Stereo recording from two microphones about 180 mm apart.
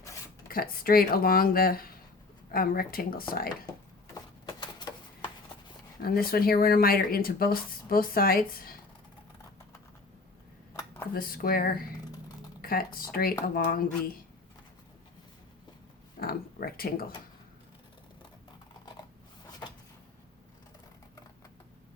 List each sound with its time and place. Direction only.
0.4 s speech: 55° left (ahead or behind)
4.1 s a sound: 25° left (ahead or behind)
6.0 s speech: 55° left (ahead or behind)
11.1 s speech: 55° left (ahead or behind)
16.2 s speech: 55° left (ahead or behind)
19.5 s a sound: 20° left (ahead or behind)